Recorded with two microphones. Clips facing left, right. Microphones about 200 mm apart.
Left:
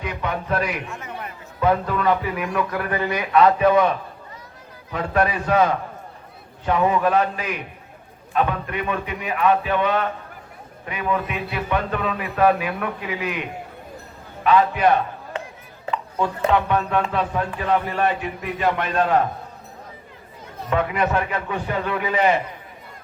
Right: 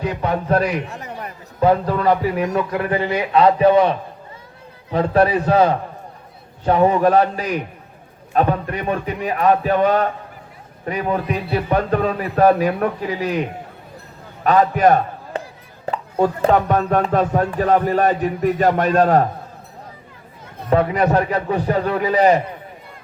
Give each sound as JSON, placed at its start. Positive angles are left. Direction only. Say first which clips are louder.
{"t": 0.0, "sound": "a man's voice", "louder": "right 6 dB", "side_deg": -35}
{"t": 14.4, "sound": "a man's voice", "louder": "right 3 dB", "side_deg": -45}
{"t": 20.7, "sound": "speech", "louder": "right 5 dB", "side_deg": -35}